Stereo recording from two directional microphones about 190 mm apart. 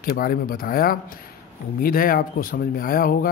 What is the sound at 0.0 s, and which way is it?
Speech, 50° left (ahead or behind).